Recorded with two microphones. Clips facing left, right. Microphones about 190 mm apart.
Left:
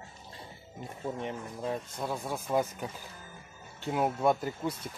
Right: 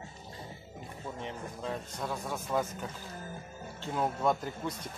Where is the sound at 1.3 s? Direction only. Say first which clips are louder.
Left 3 dB; 10° left (ahead or behind).